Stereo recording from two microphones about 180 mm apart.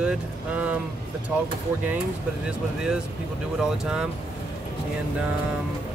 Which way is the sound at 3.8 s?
5° right (ahead or behind).